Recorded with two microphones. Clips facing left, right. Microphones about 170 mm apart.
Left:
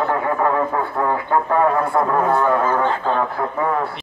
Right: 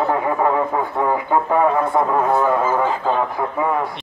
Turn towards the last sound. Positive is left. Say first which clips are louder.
# even
turn(degrees=-15)  # may be behind; listen again after turning